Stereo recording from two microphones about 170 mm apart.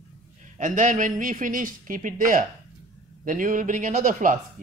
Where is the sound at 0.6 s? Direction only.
50° right (ahead or behind).